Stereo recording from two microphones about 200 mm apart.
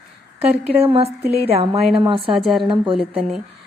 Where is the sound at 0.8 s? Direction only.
30° right (ahead or behind).